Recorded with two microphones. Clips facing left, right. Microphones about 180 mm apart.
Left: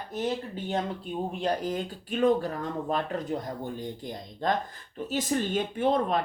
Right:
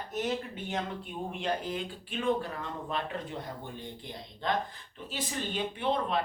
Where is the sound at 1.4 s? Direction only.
40° left (ahead or behind).